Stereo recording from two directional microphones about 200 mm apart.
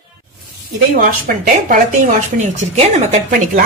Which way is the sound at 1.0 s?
45° right (ahead or behind).